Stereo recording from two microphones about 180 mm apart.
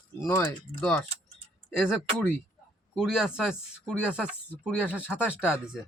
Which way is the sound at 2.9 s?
5° right (ahead or behind).